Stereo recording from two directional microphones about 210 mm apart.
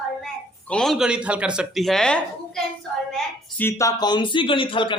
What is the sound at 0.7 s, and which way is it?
Speech, centre (ahead or behind).